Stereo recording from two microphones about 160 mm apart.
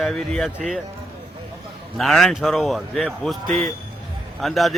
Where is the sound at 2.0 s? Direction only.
Centre (ahead or behind).